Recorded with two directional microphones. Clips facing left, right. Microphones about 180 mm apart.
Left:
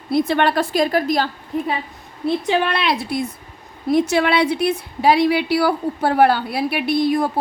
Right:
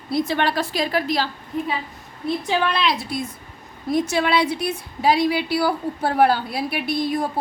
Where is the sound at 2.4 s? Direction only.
60° left (ahead or behind).